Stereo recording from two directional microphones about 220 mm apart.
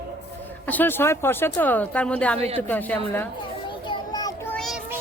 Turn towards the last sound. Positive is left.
turn(degrees=0)  # may be behind; listen again after turning